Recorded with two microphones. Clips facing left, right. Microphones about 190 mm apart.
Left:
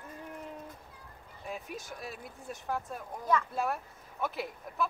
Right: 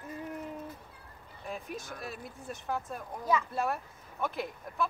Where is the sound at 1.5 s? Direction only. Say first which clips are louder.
Right 1 dB; centre (ahead or behind).